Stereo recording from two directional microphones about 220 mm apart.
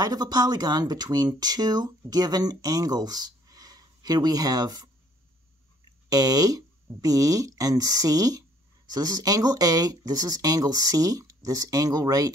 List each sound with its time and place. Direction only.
0.0 s speech: 15° right (ahead or behind)
6.0 s speech: 15° right (ahead or behind)